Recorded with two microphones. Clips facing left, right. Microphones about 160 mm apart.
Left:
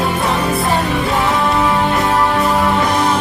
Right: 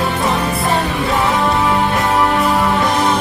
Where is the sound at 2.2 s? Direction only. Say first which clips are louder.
Even; centre (ahead or behind).